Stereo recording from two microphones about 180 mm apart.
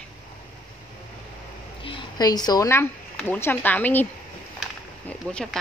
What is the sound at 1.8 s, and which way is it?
A woman's voice, 25° left (ahead or behind).